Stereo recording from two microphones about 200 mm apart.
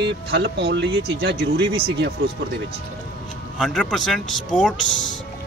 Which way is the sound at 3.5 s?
Centre (ahead or behind).